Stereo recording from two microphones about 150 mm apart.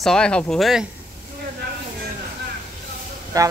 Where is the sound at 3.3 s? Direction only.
25° right (ahead or behind).